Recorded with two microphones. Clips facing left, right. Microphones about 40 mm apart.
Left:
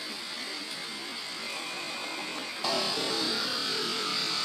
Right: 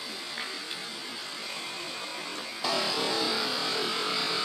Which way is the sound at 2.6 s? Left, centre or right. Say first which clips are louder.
Right 2 dB; centre.